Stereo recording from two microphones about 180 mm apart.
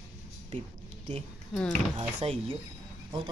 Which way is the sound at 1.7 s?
35° right (ahead or behind).